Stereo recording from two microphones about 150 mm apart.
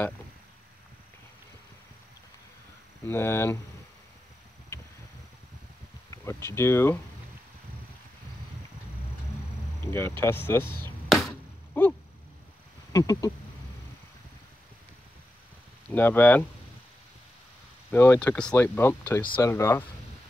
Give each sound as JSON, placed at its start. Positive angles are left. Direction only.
{"t": 3.1, "sound": "speech", "side_deg": 15}
{"t": 6.0, "sound": "speech", "side_deg": 20}
{"t": 9.8, "sound": "speech", "side_deg": 15}
{"t": 11.1, "sound": "a sound", "side_deg": 0}
{"t": 11.7, "sound": "a sound", "side_deg": 15}
{"t": 12.9, "sound": "speech", "side_deg": 25}
{"t": 15.9, "sound": "speech", "side_deg": 10}
{"t": 17.9, "sound": "speech", "side_deg": 15}